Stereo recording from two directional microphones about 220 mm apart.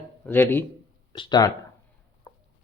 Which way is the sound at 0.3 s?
10° left (ahead or behind).